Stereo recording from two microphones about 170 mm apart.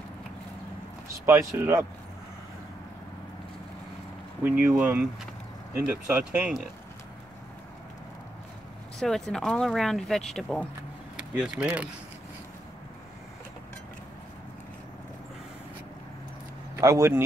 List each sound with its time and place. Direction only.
1.1 s speech: 15° right (ahead or behind)
4.4 s speech: 10° right (ahead or behind)
9.0 s speech: centre (ahead or behind)
16.7 s speech: 20° right (ahead or behind)